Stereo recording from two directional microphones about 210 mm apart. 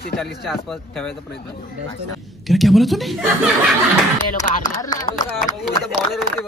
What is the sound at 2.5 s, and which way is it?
Speech, centre (ahead or behind).